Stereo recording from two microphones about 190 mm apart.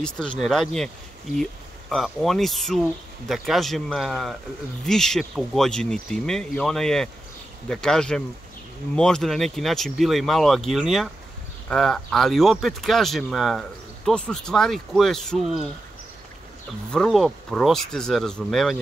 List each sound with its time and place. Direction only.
0.0 s speech: 5° left (ahead or behind)
16.9 s speech: centre (ahead or behind)